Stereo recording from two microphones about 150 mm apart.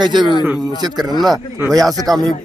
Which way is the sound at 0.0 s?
30° right (ahead or behind).